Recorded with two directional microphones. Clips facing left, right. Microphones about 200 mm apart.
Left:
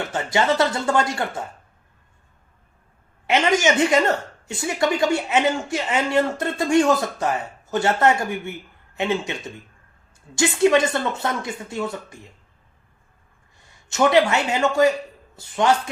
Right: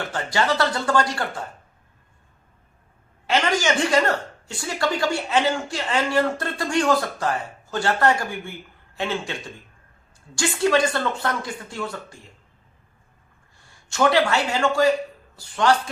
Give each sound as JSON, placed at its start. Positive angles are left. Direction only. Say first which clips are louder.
{"t": 0.1, "sound": "speech", "louder": "left 3 dB", "side_deg": 20}
{"t": 3.2, "sound": "speech", "louder": "left 3 dB", "side_deg": 20}
{"t": 10.3, "sound": "speech", "louder": "left 3 dB", "side_deg": 20}
{"t": 13.9, "sound": "speech", "louder": "left 2 dB", "side_deg": 20}